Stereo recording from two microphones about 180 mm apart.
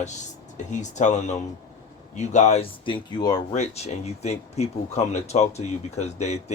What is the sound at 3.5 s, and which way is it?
Speech, 35° left (ahead or behind).